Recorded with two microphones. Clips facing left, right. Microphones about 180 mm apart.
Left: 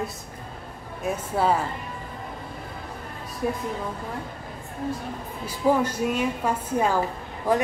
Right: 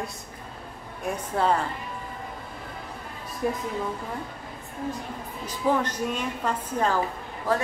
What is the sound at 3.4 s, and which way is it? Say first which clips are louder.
Speech: even; centre (ahead or behind).